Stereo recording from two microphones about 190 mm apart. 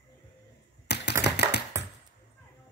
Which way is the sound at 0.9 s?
60° left (ahead or behind).